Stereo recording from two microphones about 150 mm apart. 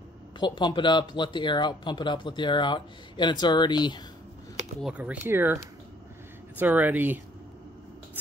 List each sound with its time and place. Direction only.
0.4 s speech: 30° left (ahead or behind)
4.8 s speech: 10° right (ahead or behind)
6.6 s speech: 10° right (ahead or behind)